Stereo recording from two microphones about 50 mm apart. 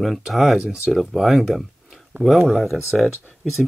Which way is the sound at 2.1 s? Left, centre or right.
Right.